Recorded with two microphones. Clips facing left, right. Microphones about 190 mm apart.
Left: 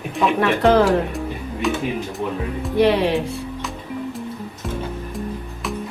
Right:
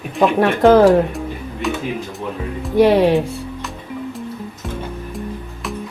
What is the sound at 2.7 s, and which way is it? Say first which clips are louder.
Speech: right 5 dB; 45° right (ahead or behind).